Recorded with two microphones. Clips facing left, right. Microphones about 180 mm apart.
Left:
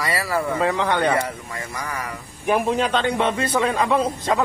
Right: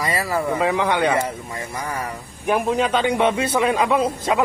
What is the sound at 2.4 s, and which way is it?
Speech, centre (ahead or behind).